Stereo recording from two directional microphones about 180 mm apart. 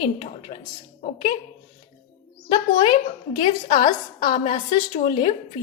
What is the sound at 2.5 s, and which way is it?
A woman's voice, 25° left (ahead or behind).